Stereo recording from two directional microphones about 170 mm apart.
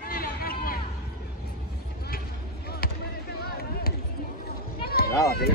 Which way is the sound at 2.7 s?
65° left (ahead or behind).